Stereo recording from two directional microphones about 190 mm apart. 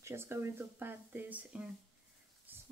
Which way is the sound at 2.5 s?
10° right (ahead or behind).